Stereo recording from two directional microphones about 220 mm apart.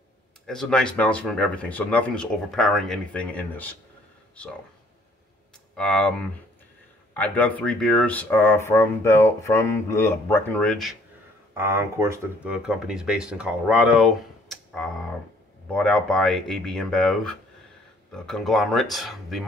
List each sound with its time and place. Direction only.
0.5 s speech: 5° left (ahead or behind)
5.8 s speech: 5° left (ahead or behind)
11.5 s speech: 10° right (ahead or behind)